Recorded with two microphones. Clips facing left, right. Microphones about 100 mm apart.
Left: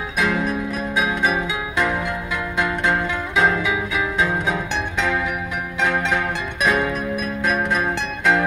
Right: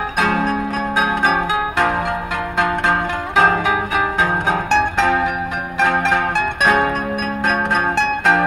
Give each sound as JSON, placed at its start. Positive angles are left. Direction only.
{"t": 0.2, "sound": "music", "side_deg": -55}